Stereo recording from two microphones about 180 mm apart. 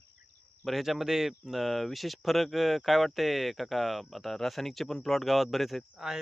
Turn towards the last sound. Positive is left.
turn(degrees=0)  # may be behind; listen again after turning